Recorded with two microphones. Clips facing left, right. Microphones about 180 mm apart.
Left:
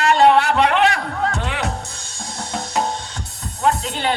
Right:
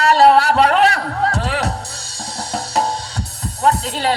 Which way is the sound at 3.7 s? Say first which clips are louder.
Right 2 dB; 35° right (ahead or behind).